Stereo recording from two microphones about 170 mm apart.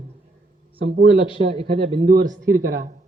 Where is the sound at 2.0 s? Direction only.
60° right (ahead or behind).